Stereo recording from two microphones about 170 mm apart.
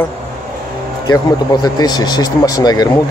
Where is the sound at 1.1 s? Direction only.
20° left (ahead or behind).